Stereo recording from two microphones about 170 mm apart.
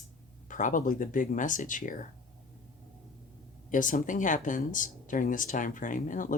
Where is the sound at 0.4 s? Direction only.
50° left (ahead or behind).